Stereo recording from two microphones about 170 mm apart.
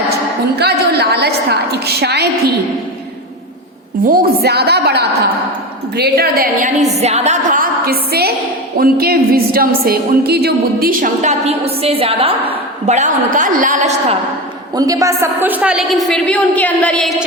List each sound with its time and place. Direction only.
0.6 s a woman's voice: 75° right (ahead or behind)
4.0 s a woman's voice: 60° right (ahead or behind); by 5.0 s 75° right (ahead or behind)
6.0 s a woman's voice: 65° right (ahead or behind)
7.0 s a woman's voice: 40° right (ahead or behind)
12.9 s a woman's voice: 45° right (ahead or behind)
14.8 s a woman's voice: 20° right (ahead or behind); by 17.2 s centre (ahead or behind)